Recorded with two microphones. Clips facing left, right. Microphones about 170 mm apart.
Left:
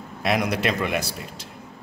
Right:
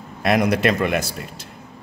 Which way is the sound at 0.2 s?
50° right (ahead or behind).